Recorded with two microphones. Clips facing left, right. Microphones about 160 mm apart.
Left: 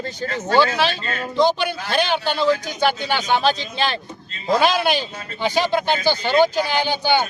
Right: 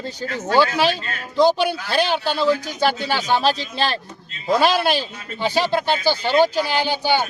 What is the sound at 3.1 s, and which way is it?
Speech, 5° right (ahead or behind).